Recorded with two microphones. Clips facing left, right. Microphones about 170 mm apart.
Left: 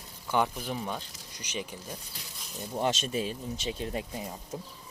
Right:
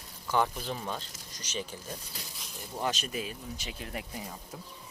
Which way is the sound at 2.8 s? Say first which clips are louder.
Left 4 dB; 25° left (ahead or behind).